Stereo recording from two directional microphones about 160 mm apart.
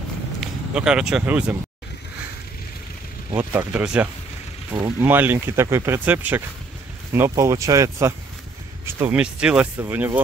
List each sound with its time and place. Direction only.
0.4 s speech: 5° right (ahead or behind)
3.3 s speech: 10° right (ahead or behind)